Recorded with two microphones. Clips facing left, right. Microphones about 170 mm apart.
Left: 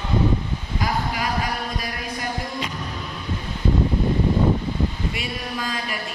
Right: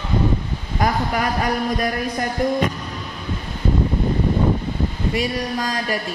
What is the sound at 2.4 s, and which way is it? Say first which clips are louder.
Music: right 13 dB; 50° right (ahead or behind).